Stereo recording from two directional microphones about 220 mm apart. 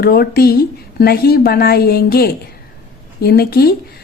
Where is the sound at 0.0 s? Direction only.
45° left (ahead or behind).